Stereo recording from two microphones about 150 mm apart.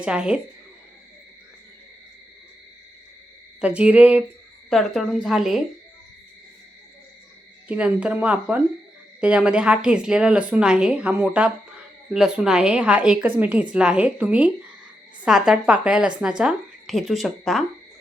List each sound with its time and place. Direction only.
0.0 s a woman's voice: 5° right (ahead or behind)
3.6 s a woman's voice: 5° right (ahead or behind)
4.7 s a woman's voice: 5° left (ahead or behind)
7.7 s a woman's voice: 10° right (ahead or behind)